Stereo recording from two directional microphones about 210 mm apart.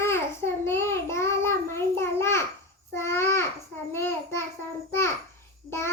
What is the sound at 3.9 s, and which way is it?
Child singing, 10° left (ahead or behind).